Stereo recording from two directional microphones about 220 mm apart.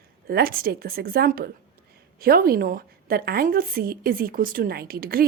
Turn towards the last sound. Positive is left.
turn(degrees=-40)  # may be behind; listen again after turning